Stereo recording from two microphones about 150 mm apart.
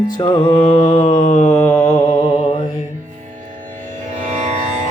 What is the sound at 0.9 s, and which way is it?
Mantra, 50° left (ahead or behind).